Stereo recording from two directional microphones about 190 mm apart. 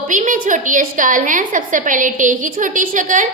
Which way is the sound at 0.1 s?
45° right (ahead or behind).